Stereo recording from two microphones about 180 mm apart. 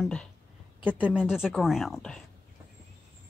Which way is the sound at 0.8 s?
5° right (ahead or behind).